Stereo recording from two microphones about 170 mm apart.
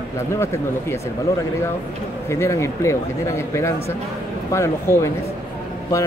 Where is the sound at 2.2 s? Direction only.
15° left (ahead or behind).